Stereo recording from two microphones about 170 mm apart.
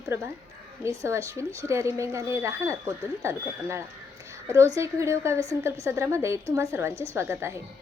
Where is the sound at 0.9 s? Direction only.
15° right (ahead or behind).